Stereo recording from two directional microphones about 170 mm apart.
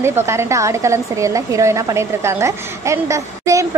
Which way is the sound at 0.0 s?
15° right (ahead or behind).